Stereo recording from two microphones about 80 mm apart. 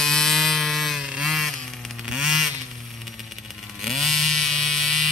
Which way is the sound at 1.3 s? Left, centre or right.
Centre.